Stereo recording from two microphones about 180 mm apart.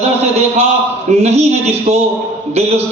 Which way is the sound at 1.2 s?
35° right (ahead or behind).